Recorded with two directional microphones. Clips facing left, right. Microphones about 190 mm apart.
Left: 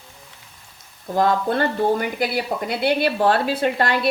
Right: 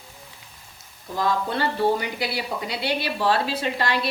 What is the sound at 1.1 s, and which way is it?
Speech, 55° left (ahead or behind).